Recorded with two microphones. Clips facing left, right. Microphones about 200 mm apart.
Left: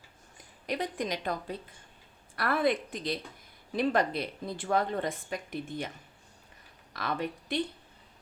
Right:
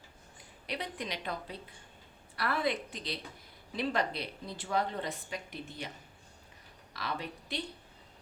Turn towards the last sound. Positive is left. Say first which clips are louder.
# left 7 dB
turn(degrees=50)  # may be behind; listen again after turning